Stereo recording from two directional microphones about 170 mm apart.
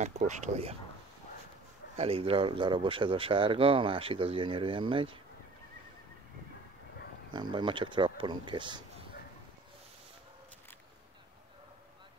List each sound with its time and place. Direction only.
0.0 s speech: 45° right (ahead or behind)
2.0 s speech: 35° right (ahead or behind)
7.3 s speech: 25° right (ahead or behind)